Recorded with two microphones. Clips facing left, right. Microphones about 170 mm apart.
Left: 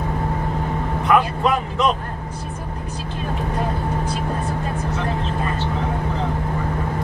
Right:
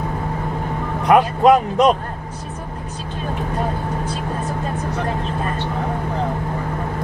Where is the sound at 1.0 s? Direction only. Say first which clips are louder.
Right 6 dB; 40° right (ahead or behind).